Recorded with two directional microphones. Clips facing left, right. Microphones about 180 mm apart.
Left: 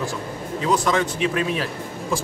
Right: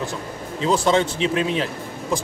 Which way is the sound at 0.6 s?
25° right (ahead or behind).